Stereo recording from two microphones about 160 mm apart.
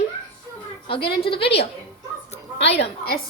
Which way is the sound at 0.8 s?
35° left (ahead or behind).